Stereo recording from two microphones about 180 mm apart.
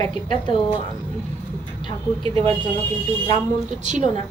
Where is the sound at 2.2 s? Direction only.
30° right (ahead or behind).